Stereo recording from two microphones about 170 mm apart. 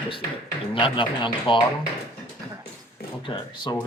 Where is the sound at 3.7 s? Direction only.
25° left (ahead or behind).